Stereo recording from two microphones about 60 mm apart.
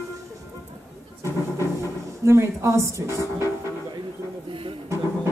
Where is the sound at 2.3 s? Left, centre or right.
Right.